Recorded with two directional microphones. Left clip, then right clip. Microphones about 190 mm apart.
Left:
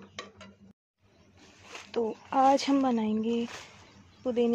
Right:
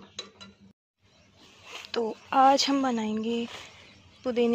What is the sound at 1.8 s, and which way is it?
A woman's voice, 5° left (ahead or behind).